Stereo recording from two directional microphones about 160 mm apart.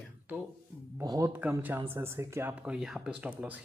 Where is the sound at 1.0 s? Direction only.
20° right (ahead or behind).